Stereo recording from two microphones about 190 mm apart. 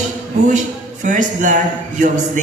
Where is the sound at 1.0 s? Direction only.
40° right (ahead or behind).